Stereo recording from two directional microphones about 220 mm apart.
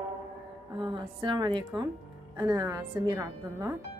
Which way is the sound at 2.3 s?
15° right (ahead or behind).